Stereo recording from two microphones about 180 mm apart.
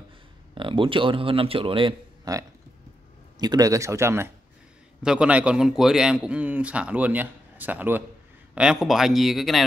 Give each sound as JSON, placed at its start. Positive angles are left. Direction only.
{"t": 0.6, "sound": "a man's voice", "side_deg": -25}